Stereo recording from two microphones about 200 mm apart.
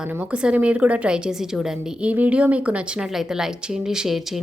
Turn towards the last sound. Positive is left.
turn(degrees=0)  # may be behind; listen again after turning